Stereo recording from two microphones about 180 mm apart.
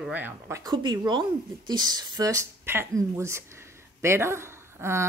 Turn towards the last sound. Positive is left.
turn(degrees=-15)  # may be behind; listen again after turning